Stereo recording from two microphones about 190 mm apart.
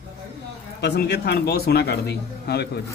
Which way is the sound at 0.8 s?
60° left (ahead or behind).